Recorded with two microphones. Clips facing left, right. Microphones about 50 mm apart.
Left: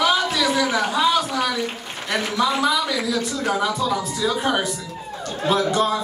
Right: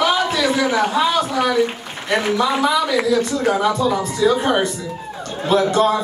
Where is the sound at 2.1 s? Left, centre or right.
Centre.